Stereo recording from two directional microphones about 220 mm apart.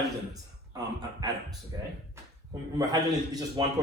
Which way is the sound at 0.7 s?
15° right (ahead or behind).